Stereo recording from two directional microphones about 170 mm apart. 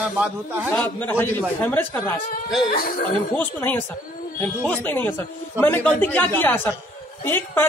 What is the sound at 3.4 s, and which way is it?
A woman's voice, 10° left (ahead or behind).